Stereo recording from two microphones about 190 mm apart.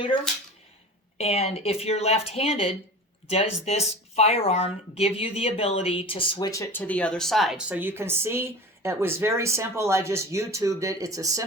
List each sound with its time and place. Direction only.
1.2 s a woman's voice: 35° left (ahead or behind); by 11.4 s 15° right (ahead or behind)